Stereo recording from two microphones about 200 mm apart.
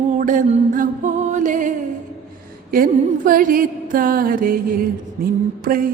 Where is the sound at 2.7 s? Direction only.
45° right (ahead or behind).